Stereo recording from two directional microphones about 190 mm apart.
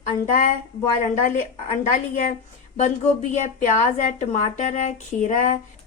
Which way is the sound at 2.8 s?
40° left (ahead or behind).